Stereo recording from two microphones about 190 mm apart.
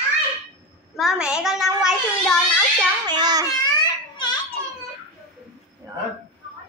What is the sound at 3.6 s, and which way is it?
Babbling, 20° left (ahead or behind).